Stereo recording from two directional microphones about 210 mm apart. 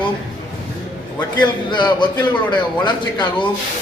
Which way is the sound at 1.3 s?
20° left (ahead or behind).